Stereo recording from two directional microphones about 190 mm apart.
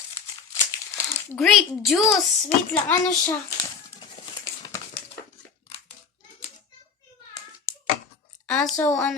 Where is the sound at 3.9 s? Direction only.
25° left (ahead or behind).